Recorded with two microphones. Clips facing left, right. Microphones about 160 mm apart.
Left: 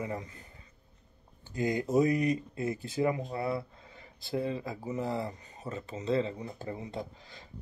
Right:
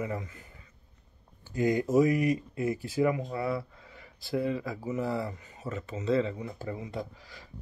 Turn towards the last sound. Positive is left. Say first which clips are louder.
# right 2 dB
turn(degrees=25)  # may be behind; listen again after turning